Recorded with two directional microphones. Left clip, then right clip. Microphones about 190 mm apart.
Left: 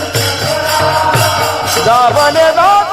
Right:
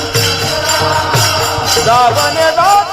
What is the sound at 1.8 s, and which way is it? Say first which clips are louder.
Music: left 2 dB; 50° left (ahead or behind).